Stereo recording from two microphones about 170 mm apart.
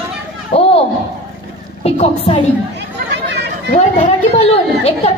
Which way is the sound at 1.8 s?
35° left (ahead or behind).